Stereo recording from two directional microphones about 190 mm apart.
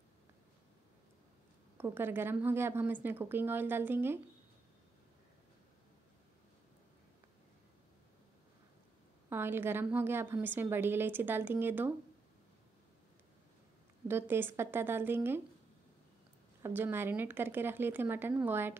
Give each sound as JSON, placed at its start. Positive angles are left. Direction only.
{"t": 1.8, "sound": "a woman's voice", "side_deg": -10}
{"t": 9.3, "sound": "a woman's voice", "side_deg": -10}
{"t": 14.0, "sound": "a woman's voice", "side_deg": -10}
{"t": 16.6, "sound": "a woman's voice", "side_deg": -10}